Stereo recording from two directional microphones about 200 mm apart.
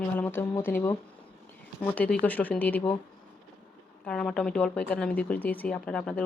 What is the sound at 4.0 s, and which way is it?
A woman's voice, 5° left (ahead or behind).